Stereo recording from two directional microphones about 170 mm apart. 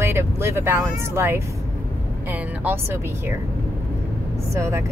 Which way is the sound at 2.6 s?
15° right (ahead or behind).